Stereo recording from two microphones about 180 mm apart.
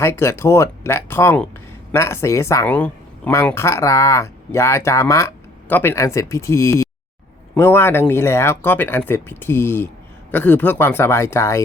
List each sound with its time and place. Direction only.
0.0 s speech: 15° left (ahead or behind)